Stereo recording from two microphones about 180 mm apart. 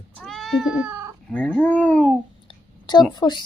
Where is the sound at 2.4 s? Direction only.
25° left (ahead or behind).